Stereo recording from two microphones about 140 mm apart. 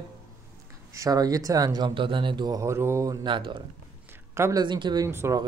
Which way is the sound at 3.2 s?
35° right (ahead or behind).